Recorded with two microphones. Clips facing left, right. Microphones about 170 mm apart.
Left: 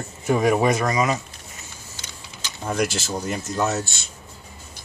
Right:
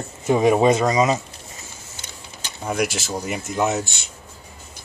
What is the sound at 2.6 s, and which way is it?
Speech, 5° right (ahead or behind).